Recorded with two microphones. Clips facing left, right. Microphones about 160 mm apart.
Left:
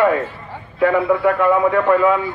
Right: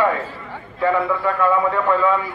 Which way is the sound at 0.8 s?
15° left (ahead or behind).